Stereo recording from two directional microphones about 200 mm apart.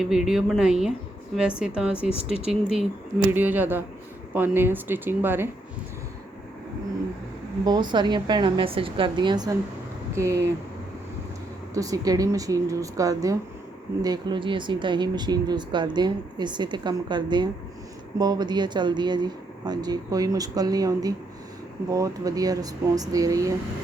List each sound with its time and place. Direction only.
0.0 s a woman's voice: centre (ahead or behind)
7.6 s speech: 20° right (ahead or behind)
11.7 s speech: 15° right (ahead or behind)